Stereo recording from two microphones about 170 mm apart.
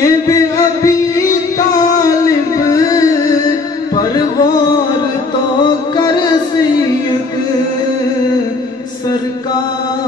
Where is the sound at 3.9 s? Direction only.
25° left (ahead or behind).